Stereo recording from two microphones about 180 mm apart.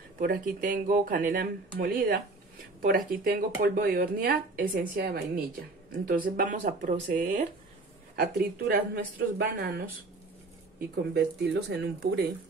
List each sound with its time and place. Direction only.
0.2 s speech: 55° right (ahead or behind)
8.2 s speech: 55° right (ahead or behind)
11.1 s speech: 65° right (ahead or behind)